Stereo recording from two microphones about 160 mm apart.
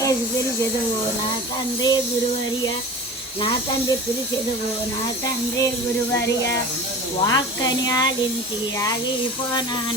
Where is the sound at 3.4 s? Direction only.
30° left (ahead or behind).